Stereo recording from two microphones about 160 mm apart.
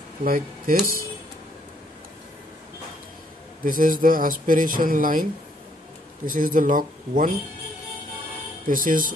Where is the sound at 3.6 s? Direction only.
60° right (ahead or behind).